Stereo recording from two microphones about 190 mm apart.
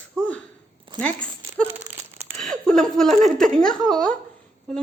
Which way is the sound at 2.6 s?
5° left (ahead or behind).